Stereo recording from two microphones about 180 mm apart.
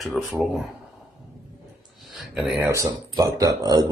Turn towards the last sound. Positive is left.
turn(degrees=-20)  # may be behind; listen again after turning